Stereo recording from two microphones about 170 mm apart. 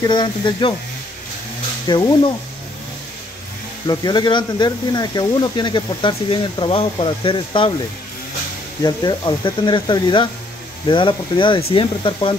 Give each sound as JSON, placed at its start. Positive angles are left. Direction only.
{"t": 0.0, "sound": "speech", "side_deg": 25}
{"t": 1.9, "sound": "speech", "side_deg": 25}
{"t": 3.8, "sound": "speech", "side_deg": 25}
{"t": 8.8, "sound": "speech", "side_deg": 25}